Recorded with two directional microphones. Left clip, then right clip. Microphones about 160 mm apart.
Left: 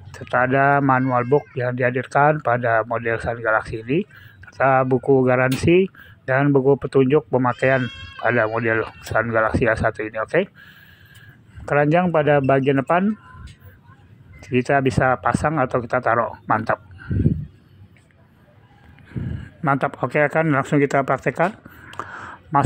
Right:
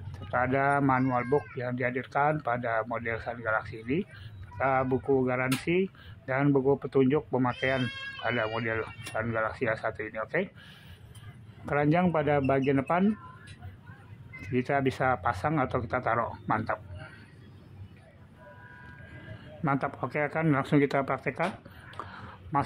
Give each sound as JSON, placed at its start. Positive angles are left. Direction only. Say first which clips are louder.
{"t": 0.1, "sound": "speech", "louder": "left 9 dB", "side_deg": 30}
{"t": 11.6, "sound": "speech", "louder": "left 9 dB", "side_deg": 35}
{"t": 14.4, "sound": "speech", "louder": "left 9 dB", "side_deg": 30}
{"t": 19.6, "sound": "speech", "louder": "left 9 dB", "side_deg": 30}
{"t": 20.4, "sound": "speech", "louder": "left 7 dB", "side_deg": 20}
{"t": 21.9, "sound": "a sound", "louder": "left 10 dB", "side_deg": 30}